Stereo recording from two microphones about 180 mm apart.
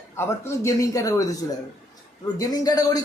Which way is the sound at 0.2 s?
15° left (ahead or behind).